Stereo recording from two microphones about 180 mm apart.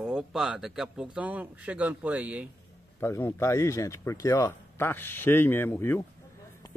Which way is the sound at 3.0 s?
15° left (ahead or behind).